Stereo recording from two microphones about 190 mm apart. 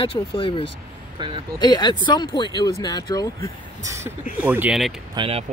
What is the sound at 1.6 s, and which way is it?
Speech, 20° left (ahead or behind).